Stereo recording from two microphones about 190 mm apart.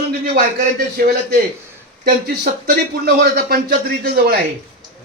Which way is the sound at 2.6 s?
60° right (ahead or behind).